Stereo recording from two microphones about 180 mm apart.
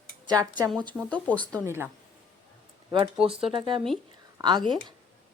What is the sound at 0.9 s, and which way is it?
Speech, centre (ahead or behind).